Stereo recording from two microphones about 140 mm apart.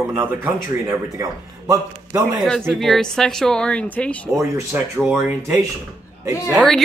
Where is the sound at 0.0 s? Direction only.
15° right (ahead or behind).